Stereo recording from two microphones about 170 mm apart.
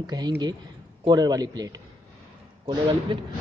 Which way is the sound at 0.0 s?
25° right (ahead or behind).